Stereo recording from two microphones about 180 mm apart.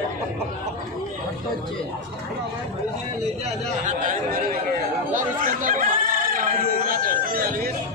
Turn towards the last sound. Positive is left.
turn(degrees=-55)  # may be behind; listen again after turning